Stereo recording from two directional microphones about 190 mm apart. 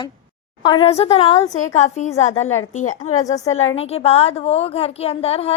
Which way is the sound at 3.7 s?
30° left (ahead or behind).